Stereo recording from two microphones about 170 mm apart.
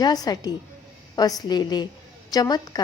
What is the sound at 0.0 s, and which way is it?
A woman's voice, 25° left (ahead or behind).